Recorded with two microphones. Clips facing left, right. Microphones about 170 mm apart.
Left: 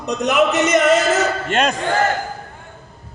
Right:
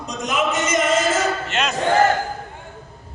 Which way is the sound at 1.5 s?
50° left (ahead or behind).